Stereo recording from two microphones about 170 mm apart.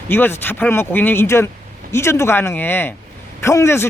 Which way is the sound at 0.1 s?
10° left (ahead or behind).